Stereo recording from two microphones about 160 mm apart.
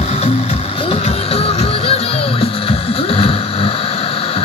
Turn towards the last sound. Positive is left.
turn(degrees=35)  # may be behind; listen again after turning